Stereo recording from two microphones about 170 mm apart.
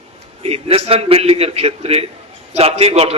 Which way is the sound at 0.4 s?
35° right (ahead or behind).